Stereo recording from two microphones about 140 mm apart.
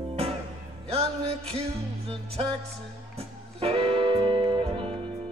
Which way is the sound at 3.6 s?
45° right (ahead or behind).